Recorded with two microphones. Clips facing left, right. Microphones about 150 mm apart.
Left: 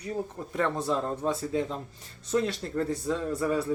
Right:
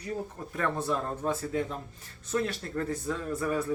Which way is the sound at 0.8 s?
25° left (ahead or behind).